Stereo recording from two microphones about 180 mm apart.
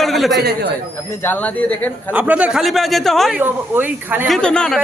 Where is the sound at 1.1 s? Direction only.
10° left (ahead or behind).